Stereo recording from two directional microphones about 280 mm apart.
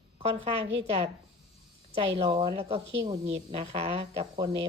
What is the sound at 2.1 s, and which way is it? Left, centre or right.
Speech, centre.